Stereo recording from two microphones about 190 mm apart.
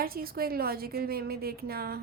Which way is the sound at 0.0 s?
50° right (ahead or behind).